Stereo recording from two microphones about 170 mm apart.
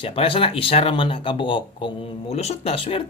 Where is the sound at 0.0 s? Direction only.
35° left (ahead or behind).